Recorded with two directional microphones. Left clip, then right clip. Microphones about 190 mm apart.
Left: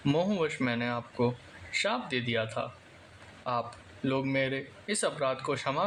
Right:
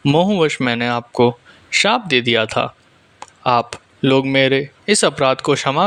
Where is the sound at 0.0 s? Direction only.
30° right (ahead or behind).